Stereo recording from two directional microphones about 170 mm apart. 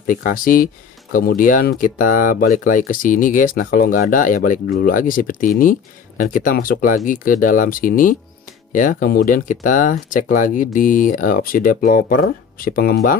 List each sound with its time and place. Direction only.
0.0 s speech: 55° left (ahead or behind)